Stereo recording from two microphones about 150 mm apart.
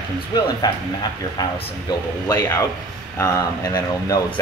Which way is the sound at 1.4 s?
25° left (ahead or behind).